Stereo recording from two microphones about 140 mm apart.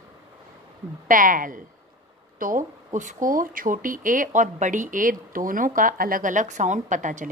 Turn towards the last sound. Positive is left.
turn(degrees=-65)  # may be behind; listen again after turning